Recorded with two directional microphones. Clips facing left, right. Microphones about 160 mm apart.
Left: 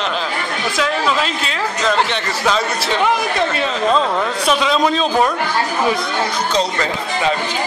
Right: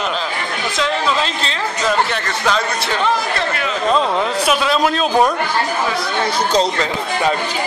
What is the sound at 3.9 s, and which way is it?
A man's voice, 5° right (ahead or behind).